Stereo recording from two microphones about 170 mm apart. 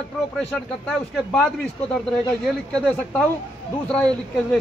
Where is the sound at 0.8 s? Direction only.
5° left (ahead or behind).